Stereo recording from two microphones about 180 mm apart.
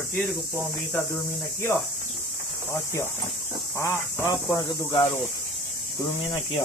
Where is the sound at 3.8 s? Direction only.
20° left (ahead or behind).